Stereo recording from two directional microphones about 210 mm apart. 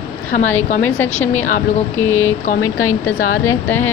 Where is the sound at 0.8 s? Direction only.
10° left (ahead or behind).